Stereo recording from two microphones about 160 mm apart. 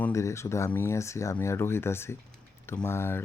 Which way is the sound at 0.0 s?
20° left (ahead or behind).